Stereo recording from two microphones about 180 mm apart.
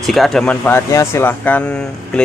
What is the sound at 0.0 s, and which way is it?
Speech, centre (ahead or behind).